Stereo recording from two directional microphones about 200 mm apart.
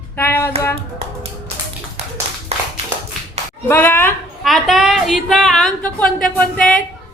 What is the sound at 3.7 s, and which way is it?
A child's voice, 10° left (ahead or behind).